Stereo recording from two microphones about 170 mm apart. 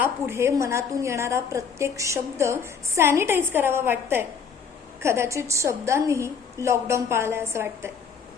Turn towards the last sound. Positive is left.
turn(degrees=-15)  # may be behind; listen again after turning